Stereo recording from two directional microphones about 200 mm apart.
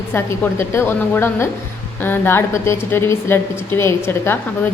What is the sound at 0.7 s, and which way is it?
A woman's voice, 10° left (ahead or behind).